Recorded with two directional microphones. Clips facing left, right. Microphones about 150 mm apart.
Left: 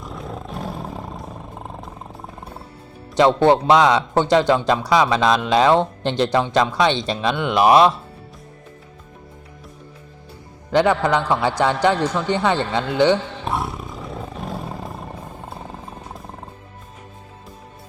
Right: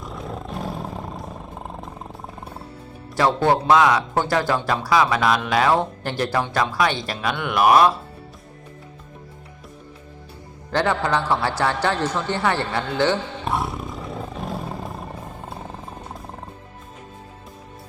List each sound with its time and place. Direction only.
0.0 s roar: centre (ahead or behind)
3.2 s speech: 20° left (ahead or behind)
10.7 s a man's voice: 15° left (ahead or behind)
13.4 s roar: centre (ahead or behind)